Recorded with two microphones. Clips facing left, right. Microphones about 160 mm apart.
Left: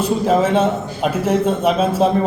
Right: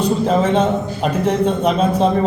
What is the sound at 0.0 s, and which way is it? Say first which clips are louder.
A man's voice: even; 5° left (ahead or behind).